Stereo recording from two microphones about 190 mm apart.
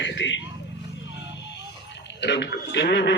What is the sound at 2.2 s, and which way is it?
Speech, 65° left (ahead or behind).